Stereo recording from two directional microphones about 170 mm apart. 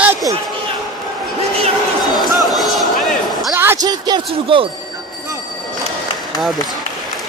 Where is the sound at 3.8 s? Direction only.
25° right (ahead or behind).